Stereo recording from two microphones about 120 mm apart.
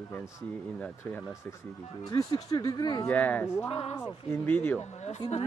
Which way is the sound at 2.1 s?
30° left (ahead or behind).